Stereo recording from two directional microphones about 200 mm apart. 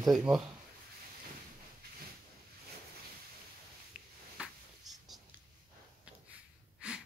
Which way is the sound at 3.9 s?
5° right (ahead or behind).